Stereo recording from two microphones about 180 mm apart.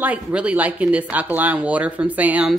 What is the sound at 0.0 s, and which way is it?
Speech, 5° right (ahead or behind).